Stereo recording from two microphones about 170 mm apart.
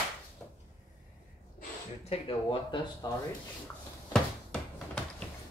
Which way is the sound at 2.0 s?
30° left (ahead or behind).